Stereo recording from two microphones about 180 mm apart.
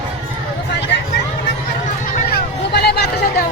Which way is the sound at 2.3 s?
65° left (ahead or behind).